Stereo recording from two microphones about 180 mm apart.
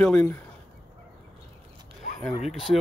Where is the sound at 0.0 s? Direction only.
5° left (ahead or behind).